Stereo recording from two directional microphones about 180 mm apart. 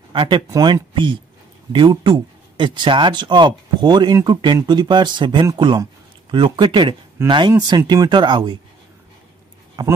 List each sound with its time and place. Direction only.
0.1 s speech: 30° right (ahead or behind)